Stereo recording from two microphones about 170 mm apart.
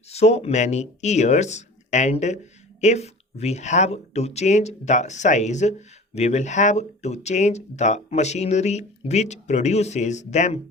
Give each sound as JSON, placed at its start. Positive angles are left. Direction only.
{"t": 0.1, "sound": "speech", "side_deg": 40}